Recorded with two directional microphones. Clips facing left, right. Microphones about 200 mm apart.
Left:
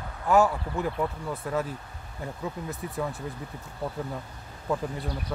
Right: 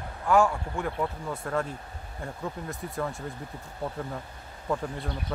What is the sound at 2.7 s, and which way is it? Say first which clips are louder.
Speech: left 1 dB; centre (ahead or behind).